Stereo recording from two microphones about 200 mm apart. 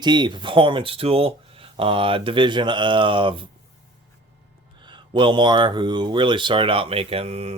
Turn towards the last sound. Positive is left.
turn(degrees=-30)  # may be behind; listen again after turning